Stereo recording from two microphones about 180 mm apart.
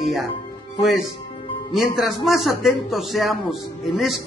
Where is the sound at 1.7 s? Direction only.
Centre (ahead or behind).